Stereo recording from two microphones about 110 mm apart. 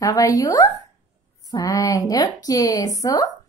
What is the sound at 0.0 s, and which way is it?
A woman's voice, 30° left (ahead or behind).